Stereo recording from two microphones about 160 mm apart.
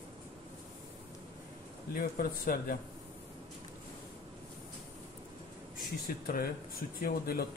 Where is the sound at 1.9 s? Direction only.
65° left (ahead or behind).